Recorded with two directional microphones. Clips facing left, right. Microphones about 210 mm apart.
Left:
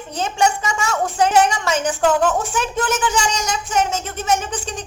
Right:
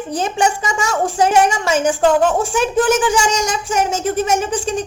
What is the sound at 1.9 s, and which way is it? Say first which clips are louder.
Speech: right 3 dB; 30° right (ahead or behind).